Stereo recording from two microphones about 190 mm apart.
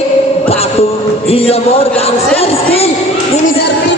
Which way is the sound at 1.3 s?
30° left (ahead or behind).